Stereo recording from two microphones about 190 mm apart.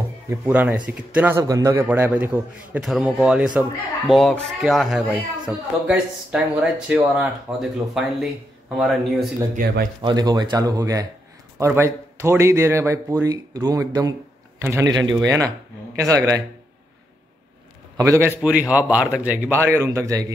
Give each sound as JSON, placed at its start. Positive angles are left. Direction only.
{"t": 0.3, "sound": "a man's voice", "side_deg": -10}
{"t": 9.6, "sound": "speech", "side_deg": -45}
{"t": 10.0, "sound": "a man's voice", "side_deg": -20}
{"t": 17.9, "sound": "a man's voice", "side_deg": -15}